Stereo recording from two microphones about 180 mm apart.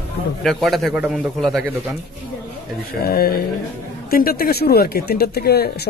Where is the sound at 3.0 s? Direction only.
55° left (ahead or behind).